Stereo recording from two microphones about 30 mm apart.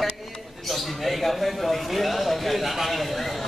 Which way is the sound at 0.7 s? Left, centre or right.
Centre.